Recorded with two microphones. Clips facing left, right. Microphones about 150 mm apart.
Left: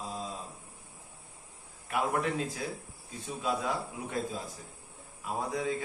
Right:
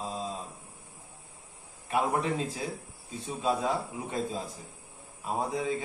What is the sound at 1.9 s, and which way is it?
A man's voice, 25° right (ahead or behind).